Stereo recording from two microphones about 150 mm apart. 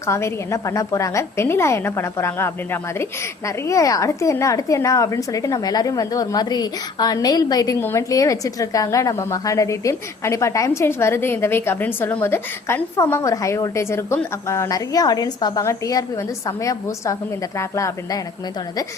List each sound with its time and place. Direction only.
0.1 s a woman's voice: 20° left (ahead or behind)
3.7 s a woman's voice: 20° left (ahead or behind)
17.6 s a woman's voice: 20° left (ahead or behind)